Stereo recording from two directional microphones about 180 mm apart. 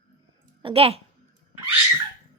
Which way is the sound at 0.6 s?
35° right (ahead or behind).